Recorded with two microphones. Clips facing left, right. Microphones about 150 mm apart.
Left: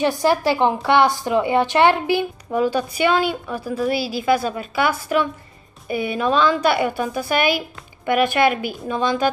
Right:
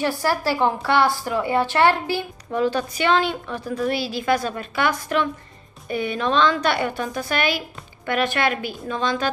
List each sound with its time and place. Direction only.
0.0 s a woman's voice: 20° left (ahead or behind)